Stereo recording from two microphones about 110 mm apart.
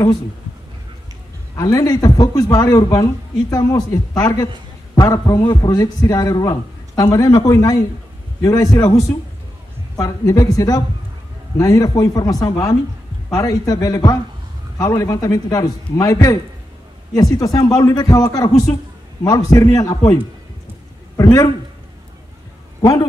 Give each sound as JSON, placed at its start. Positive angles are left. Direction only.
{"t": 1.6, "sound": "a man's voice", "side_deg": 35}
{"t": 9.9, "sound": "a man's voice", "side_deg": 30}
{"t": 21.2, "sound": "a man's voice", "side_deg": 35}